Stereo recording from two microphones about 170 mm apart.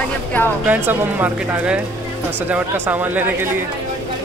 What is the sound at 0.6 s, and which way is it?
Speech, 10° right (ahead or behind).